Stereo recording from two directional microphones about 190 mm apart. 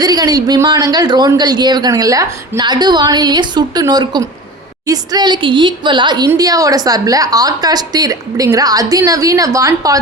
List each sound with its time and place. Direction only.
0.0 s speech: 20° right (ahead or behind)